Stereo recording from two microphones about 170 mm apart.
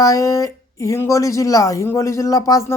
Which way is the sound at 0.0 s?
20° left (ahead or behind).